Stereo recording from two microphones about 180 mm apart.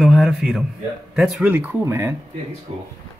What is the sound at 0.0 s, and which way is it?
Speech, centre (ahead or behind).